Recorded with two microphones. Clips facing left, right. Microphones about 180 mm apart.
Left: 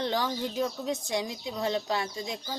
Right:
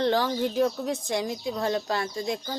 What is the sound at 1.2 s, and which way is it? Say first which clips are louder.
A woman's voice: right 4 dB; 50° right (ahead or behind).